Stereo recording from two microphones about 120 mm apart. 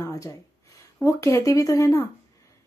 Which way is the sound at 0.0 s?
30° left (ahead or behind).